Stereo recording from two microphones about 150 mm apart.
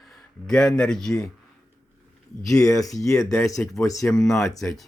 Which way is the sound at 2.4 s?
20° left (ahead or behind).